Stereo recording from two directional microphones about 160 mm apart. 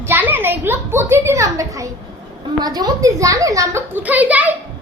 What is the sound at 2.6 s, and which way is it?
A child's voice, 25° right (ahead or behind).